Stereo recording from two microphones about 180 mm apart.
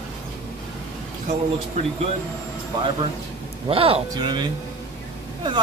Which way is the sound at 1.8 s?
35° right (ahead or behind).